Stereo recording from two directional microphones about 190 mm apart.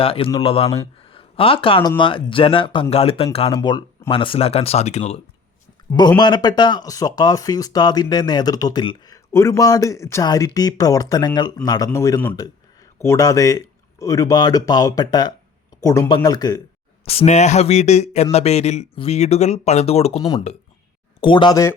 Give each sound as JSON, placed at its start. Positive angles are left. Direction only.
{"t": 0.0, "sound": "speech", "side_deg": 30}
{"t": 1.0, "sound": "a sound", "side_deg": 30}
{"t": 2.0, "sound": "speech", "side_deg": 25}
{"t": 6.1, "sound": "speech", "side_deg": 20}
{"t": 17.1, "sound": "speech", "side_deg": 35}